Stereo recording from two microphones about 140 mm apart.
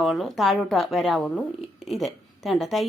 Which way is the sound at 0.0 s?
Centre (ahead or behind).